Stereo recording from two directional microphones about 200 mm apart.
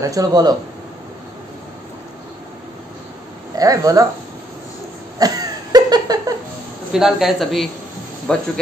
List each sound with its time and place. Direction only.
0.0 s speech: 15° right (ahead or behind)
3.5 s speech: 15° right (ahead or behind)
5.2 s a sound: 20° right (ahead or behind)
6.9 s a man's voice: centre (ahead or behind)